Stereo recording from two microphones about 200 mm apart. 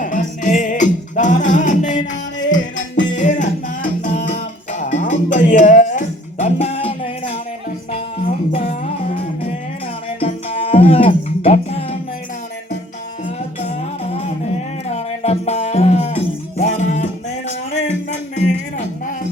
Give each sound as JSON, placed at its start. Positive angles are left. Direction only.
{"t": 0.0, "sound": "music", "side_deg": 40}
{"t": 13.7, "sound": "music", "side_deg": 30}